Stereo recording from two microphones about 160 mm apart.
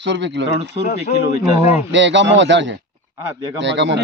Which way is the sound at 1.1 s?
45° left (ahead or behind).